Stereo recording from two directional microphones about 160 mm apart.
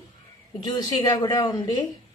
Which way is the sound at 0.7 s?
25° left (ahead or behind).